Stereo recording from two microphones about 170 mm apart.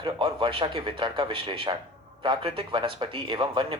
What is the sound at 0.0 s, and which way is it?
A man's voice, 30° right (ahead or behind).